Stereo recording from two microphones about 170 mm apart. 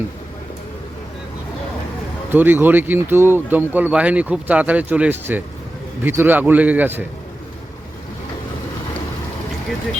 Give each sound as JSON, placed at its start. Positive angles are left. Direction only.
{"t": 2.3, "sound": "speech", "side_deg": -10}